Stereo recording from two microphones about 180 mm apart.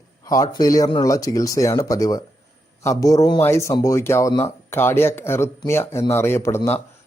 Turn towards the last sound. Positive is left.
turn(degrees=15)  # may be behind; listen again after turning